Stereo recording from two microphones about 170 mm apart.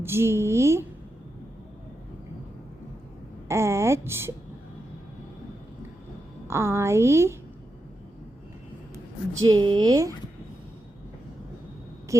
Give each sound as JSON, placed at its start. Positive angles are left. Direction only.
{"t": 0.0, "sound": "a woman's voice", "side_deg": -15}
{"t": 3.5, "sound": "a woman's voice", "side_deg": -15}
{"t": 6.5, "sound": "a woman's voice", "side_deg": -15}
{"t": 9.5, "sound": "a woman's voice", "side_deg": -25}